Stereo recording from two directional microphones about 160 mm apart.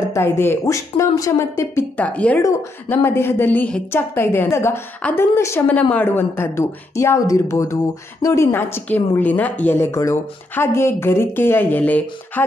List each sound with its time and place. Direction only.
0.1 s a woman's voice: 15° left (ahead or behind)